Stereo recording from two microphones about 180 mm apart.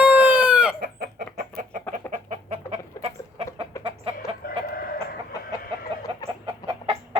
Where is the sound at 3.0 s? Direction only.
35° right (ahead or behind).